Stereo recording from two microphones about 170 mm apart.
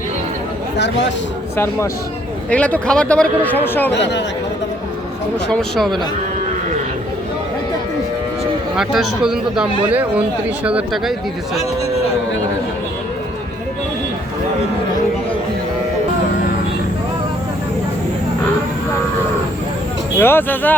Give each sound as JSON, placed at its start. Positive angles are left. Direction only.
{"t": 1.5, "sound": "a man's voice", "side_deg": 15}
{"t": 3.9, "sound": "speech", "side_deg": 90}
{"t": 5.5, "sound": "speech", "side_deg": 5}
{"t": 8.7, "sound": "speech", "side_deg": 0}
{"t": 20.1, "sound": "a man's voice", "side_deg": 10}